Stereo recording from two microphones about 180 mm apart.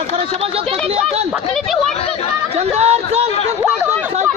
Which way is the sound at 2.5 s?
35° right (ahead or behind).